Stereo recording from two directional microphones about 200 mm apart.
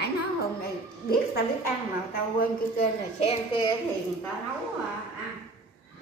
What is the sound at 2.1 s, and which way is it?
Speech, 45° left (ahead or behind).